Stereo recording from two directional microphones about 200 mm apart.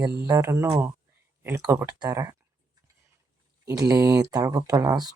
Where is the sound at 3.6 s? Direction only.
15° right (ahead or behind).